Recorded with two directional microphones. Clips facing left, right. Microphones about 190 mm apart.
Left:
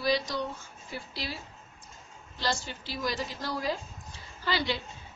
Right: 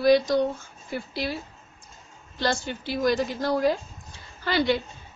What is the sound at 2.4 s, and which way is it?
A woman's voice, 55° right (ahead or behind).